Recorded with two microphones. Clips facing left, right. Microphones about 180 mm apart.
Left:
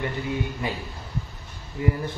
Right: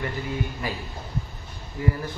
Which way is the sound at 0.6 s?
20° left (ahead or behind).